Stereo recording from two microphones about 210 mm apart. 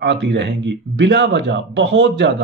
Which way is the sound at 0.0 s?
55° right (ahead or behind).